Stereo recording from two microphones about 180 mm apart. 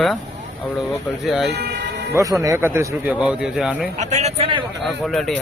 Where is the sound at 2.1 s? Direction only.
15° right (ahead or behind).